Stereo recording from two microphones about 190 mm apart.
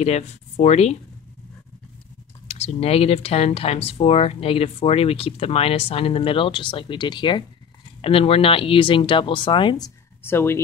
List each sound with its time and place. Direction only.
0.0 s speech: 35° left (ahead or behind)
2.4 s speech: 35° left (ahead or behind); by 10.6 s 15° left (ahead or behind)